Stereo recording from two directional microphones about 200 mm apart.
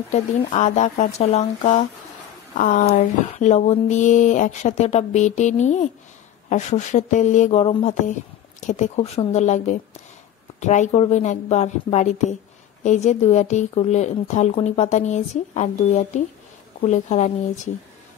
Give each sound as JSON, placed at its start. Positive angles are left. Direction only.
{"t": 0.1, "sound": "speech", "side_deg": 35}